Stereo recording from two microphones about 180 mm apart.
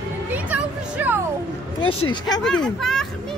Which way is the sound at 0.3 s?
10° right (ahead or behind).